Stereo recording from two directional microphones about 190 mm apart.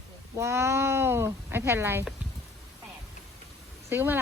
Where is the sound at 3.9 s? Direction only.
10° right (ahead or behind).